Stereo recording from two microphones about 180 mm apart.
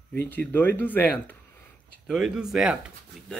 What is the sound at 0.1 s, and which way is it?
Speech, 10° left (ahead or behind).